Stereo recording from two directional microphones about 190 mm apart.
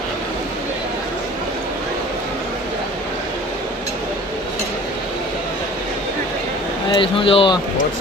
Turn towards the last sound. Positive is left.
turn(degrees=25)  # may be behind; listen again after turning